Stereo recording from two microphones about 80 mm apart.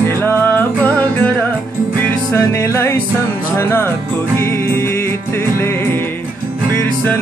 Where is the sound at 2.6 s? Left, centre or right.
Left.